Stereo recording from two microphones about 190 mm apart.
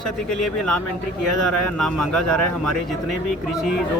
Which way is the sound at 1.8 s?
Centre (ahead or behind).